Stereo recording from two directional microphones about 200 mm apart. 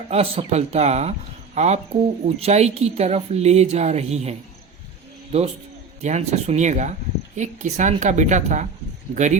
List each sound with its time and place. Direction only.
0.1 s speech: 30° right (ahead or behind)
6.0 s speech: 35° right (ahead or behind)